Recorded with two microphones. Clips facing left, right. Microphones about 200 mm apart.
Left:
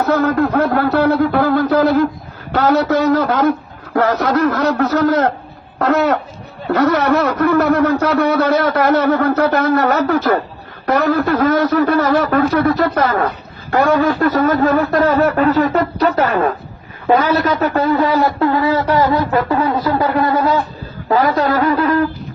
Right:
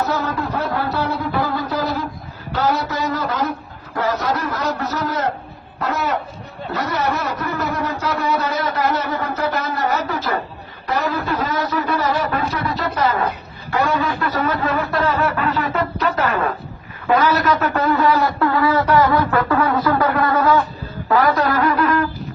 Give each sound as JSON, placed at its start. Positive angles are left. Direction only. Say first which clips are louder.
{"t": 0.0, "sound": "a man's voice", "louder": "left 8 dB", "side_deg": 55}